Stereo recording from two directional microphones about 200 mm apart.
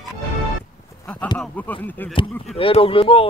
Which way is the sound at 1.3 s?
5° left (ahead or behind).